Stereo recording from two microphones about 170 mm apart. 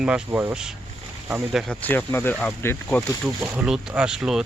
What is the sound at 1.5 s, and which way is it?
Speech, 5° left (ahead or behind).